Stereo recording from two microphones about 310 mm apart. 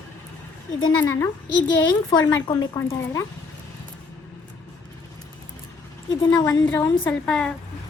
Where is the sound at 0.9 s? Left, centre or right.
Centre.